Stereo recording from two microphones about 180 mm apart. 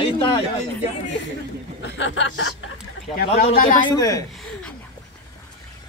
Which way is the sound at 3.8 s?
20° left (ahead or behind).